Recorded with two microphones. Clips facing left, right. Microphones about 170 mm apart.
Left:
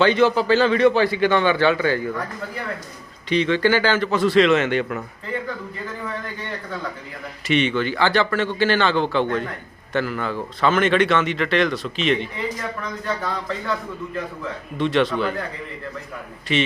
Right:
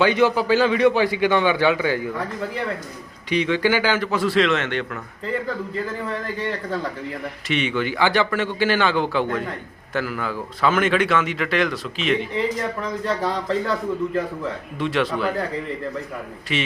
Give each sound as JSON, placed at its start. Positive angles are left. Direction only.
{"t": 0.0, "sound": "a man's voice", "side_deg": -10}
{"t": 3.2, "sound": "a man's voice", "side_deg": -10}
{"t": 7.4, "sound": "a man's voice", "side_deg": -5}
{"t": 13.2, "sound": "a man's voice", "side_deg": -35}
{"t": 14.8, "sound": "speech", "side_deg": -5}
{"t": 16.5, "sound": "speech", "side_deg": -5}